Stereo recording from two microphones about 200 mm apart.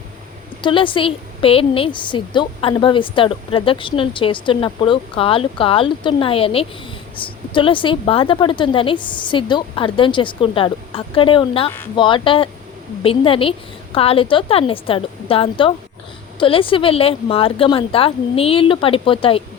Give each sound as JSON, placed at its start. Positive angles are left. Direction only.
{"t": 0.6, "sound": "a woman's voice", "side_deg": 25}